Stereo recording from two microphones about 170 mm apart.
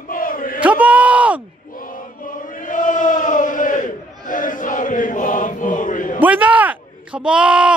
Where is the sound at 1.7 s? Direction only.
55° left (ahead or behind).